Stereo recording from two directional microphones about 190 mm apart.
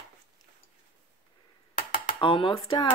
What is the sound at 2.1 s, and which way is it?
Speech, 25° left (ahead or behind).